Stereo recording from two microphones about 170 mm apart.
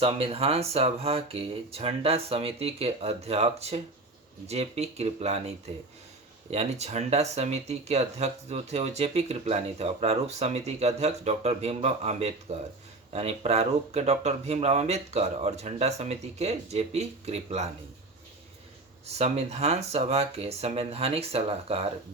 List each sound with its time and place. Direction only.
0.0 s speech: 35° right (ahead or behind)
19.0 s speech: 40° right (ahead or behind)